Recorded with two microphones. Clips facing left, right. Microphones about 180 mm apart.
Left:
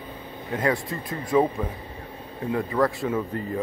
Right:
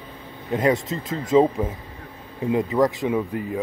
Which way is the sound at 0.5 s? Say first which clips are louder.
Right 4 dB; 20° right (ahead or behind).